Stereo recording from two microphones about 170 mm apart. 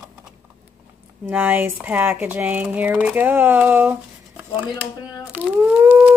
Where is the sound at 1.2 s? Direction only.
10° right (ahead or behind).